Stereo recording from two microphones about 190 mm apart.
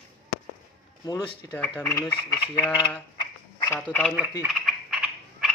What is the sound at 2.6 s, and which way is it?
Speech, 25° left (ahead or behind).